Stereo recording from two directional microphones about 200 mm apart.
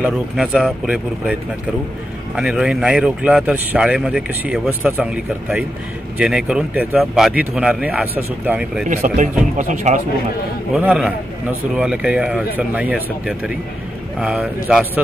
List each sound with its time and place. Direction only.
0.0 s speech: centre (ahead or behind)
2.3 s speech: 5° right (ahead or behind)
8.8 s speech: 35° right (ahead or behind)
10.7 s speech: 5° right (ahead or behind)